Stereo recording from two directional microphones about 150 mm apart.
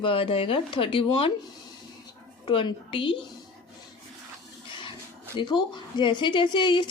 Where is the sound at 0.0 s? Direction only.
35° left (ahead or behind).